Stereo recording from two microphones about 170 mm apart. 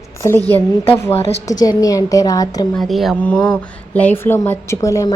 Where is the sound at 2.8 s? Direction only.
Centre (ahead or behind).